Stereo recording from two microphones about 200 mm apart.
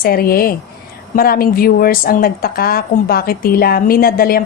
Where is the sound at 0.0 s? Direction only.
50° left (ahead or behind).